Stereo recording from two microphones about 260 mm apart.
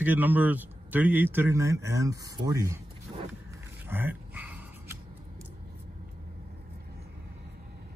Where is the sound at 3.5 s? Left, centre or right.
Centre.